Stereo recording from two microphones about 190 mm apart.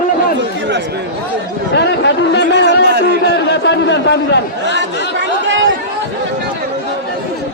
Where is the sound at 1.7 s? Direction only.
65° left (ahead or behind).